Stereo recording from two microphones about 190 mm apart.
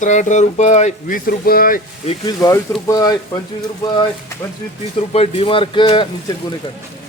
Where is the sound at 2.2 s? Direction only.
20° left (ahead or behind).